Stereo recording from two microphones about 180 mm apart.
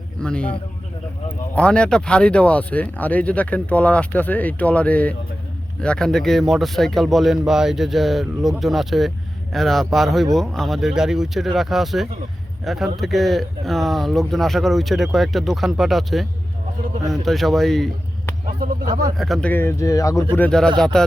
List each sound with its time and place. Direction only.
0.2 s speech: 5° left (ahead or behind)
1.5 s speech: 5° left (ahead or behind)
18.6 s speech: 50° right (ahead or behind)
19.1 s speech: centre (ahead or behind); by 20.2 s 20° left (ahead or behind)
20.3 s speech: 5° left (ahead or behind)